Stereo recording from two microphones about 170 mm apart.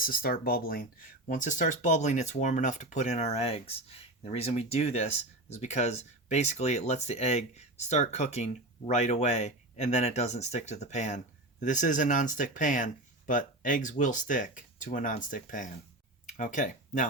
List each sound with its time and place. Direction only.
0.0 s speech: 60° left (ahead or behind)
1.3 s speech: 50° left (ahead or behind)